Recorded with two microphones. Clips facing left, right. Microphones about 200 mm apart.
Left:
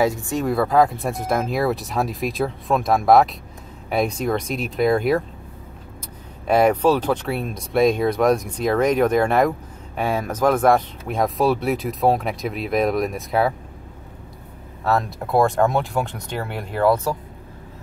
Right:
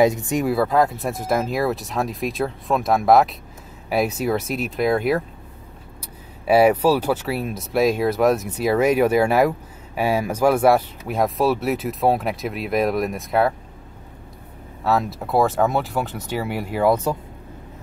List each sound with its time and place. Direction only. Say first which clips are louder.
0.0 s speech: right 3 dB; 20° right (ahead or behind)
0.5 s speech: left 2 dB; centre (ahead or behind)
6.4 s speech: right 1 dB; 5° right (ahead or behind)
14.8 s speech: even; 5° right (ahead or behind); by 17.2 s 20° right (ahead or behind)